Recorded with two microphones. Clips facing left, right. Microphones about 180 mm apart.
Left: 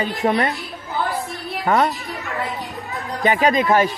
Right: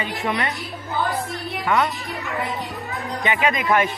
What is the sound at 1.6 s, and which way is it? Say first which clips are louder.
Speech: left 3 dB; 35° left (ahead or behind).